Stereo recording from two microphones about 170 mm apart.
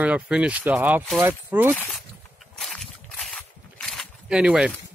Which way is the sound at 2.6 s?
Centre (ahead or behind).